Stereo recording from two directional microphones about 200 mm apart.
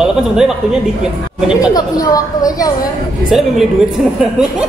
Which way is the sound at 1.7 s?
20° left (ahead or behind).